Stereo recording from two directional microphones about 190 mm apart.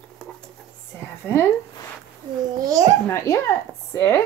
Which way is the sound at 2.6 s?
20° right (ahead or behind).